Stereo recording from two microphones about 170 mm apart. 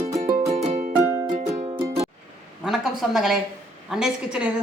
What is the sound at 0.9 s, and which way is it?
Music, 15° right (ahead or behind).